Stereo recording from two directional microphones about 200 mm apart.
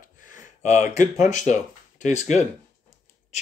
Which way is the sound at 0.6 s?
35° left (ahead or behind).